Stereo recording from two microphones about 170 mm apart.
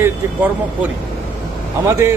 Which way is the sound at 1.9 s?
15° right (ahead or behind).